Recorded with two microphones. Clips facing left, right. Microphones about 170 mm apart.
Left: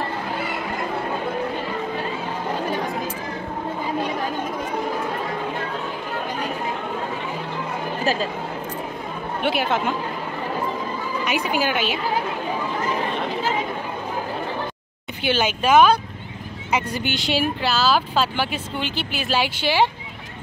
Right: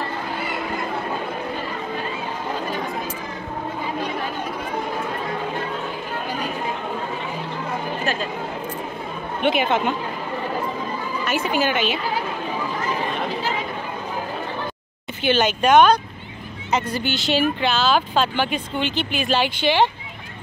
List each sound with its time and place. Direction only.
8.0 s a sound: 35° left (ahead or behind)
9.4 s speech: 5° left (ahead or behind)
11.2 s speech: 10° left (ahead or behind)
15.2 s speech: 10° left (ahead or behind)